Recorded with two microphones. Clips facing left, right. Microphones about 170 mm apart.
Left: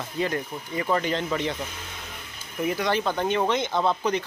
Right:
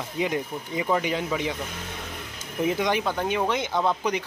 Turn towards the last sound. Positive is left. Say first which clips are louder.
# left 1 dB
turn(degrees=-10)  # may be behind; listen again after turning